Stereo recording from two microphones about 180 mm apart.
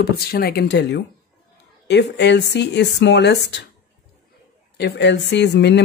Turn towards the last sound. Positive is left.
turn(degrees=70)  # may be behind; listen again after turning